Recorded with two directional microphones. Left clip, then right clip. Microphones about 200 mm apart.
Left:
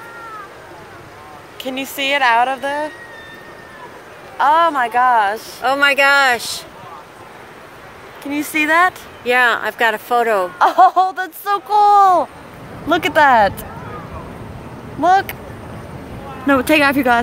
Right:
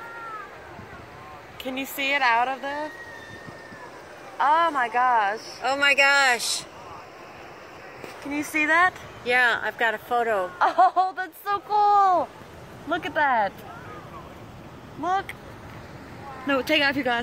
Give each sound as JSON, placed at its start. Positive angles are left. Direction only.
{"t": 1.6, "sound": "speech", "side_deg": -5}
{"t": 2.0, "sound": "speech", "side_deg": 10}
{"t": 2.4, "sound": "speech", "side_deg": 35}
{"t": 4.4, "sound": "a woman's voice", "side_deg": 50}
{"t": 5.6, "sound": "speech", "side_deg": 30}
{"t": 8.4, "sound": "speech", "side_deg": 40}
{"t": 12.9, "sound": "a woman's voice", "side_deg": 40}
{"t": 15.0, "sound": "a woman's voice", "side_deg": 45}
{"t": 16.4, "sound": "speech", "side_deg": 40}